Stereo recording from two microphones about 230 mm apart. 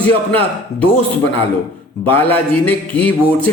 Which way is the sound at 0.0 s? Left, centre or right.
Centre.